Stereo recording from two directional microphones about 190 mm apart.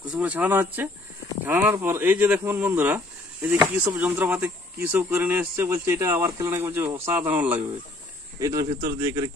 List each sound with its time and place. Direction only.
0.0 s speech: 5° right (ahead or behind)